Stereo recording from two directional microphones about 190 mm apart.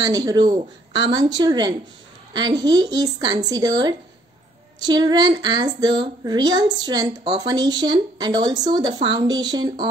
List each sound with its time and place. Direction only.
0.0 s speech: 20° right (ahead or behind)